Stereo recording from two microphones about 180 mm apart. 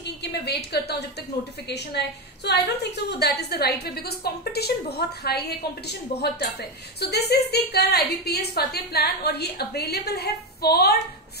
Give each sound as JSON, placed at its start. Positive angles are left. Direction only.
{"t": 0.0, "sound": "a woman's voice", "side_deg": 70}